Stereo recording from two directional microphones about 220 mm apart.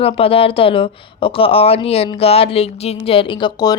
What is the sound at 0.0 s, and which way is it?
Speech, 25° left (ahead or behind).